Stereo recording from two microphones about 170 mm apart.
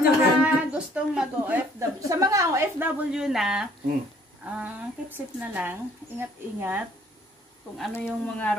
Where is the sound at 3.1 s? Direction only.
Centre (ahead or behind).